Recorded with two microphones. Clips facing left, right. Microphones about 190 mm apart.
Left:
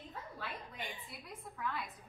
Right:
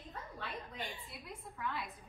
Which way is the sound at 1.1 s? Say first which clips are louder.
Even; centre (ahead or behind).